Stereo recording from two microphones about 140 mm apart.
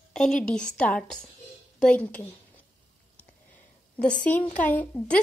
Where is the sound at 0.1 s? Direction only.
5° left (ahead or behind).